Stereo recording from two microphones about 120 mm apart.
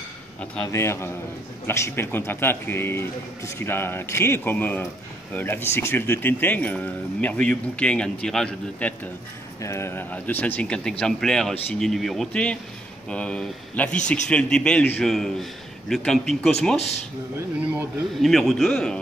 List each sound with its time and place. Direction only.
0.7 s speech: 20° left (ahead or behind)
9.6 s speech: 25° left (ahead or behind); by 16.7 s 5° left (ahead or behind)
17.6 s speech: 10° right (ahead or behind)
18.2 s speech: 5° left (ahead or behind)